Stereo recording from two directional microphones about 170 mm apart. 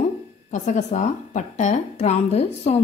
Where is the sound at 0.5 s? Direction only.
45° left (ahead or behind).